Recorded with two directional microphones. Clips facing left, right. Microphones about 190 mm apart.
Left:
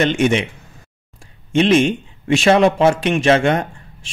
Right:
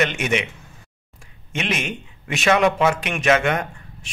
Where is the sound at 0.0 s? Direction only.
30° left (ahead or behind).